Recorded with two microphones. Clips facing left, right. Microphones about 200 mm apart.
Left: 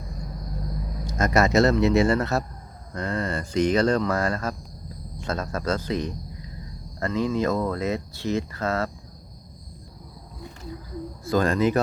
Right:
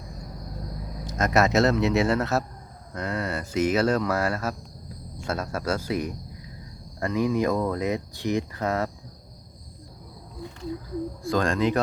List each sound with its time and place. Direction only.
1.0 s speech: centre (ahead or behind); by 8.9 s 15° right (ahead or behind)
11.2 s speech: centre (ahead or behind)